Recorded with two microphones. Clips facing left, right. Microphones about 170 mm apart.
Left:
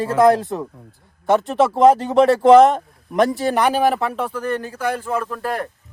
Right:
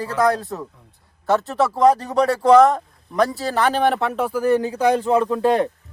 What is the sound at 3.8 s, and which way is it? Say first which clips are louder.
Speech: even; centre (ahead or behind).